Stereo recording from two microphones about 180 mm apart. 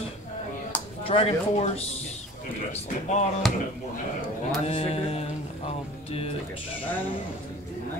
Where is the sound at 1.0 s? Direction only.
30° left (ahead or behind).